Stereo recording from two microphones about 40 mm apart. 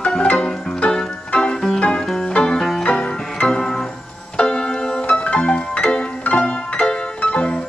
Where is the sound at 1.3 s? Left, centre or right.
Left.